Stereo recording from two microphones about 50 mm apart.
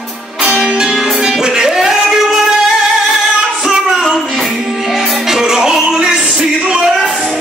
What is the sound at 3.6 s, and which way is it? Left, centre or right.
Music, centre.